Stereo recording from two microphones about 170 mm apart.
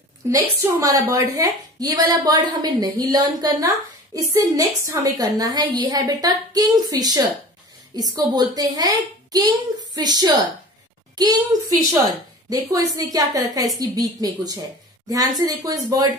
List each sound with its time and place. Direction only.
0.3 s a woman's voice: 20° right (ahead or behind)